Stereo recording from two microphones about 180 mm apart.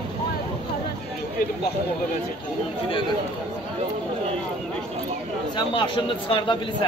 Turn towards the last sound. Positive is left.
turn(degrees=30)  # may be behind; listen again after turning